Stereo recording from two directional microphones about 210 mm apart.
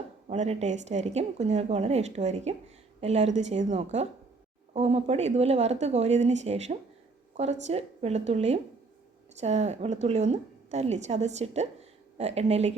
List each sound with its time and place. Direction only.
0.3 s a woman's voice: 30° right (ahead or behind)